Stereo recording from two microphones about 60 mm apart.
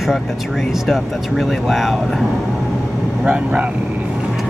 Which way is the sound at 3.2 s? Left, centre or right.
Right.